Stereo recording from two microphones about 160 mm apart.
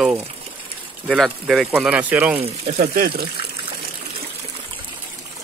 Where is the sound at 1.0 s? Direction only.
Centre (ahead or behind).